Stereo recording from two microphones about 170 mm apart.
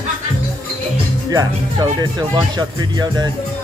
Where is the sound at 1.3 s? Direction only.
20° right (ahead or behind).